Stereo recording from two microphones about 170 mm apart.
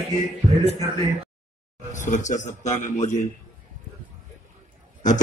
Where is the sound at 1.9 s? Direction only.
45° left (ahead or behind).